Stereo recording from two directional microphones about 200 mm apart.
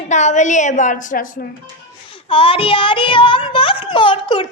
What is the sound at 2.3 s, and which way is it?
A woman's voice, 25° left (ahead or behind).